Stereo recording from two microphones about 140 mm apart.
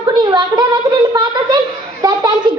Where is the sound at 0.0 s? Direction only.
30° right (ahead or behind).